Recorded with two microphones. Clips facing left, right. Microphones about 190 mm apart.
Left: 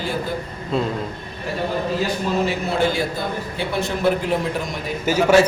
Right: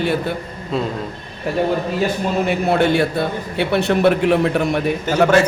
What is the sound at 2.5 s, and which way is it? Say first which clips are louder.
A man's voice: right 5 dB; 60° right (ahead or behind).